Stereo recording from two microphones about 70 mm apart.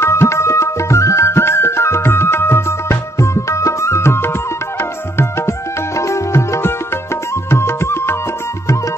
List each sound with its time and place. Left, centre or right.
0.0 s music: left
5.9 s music: left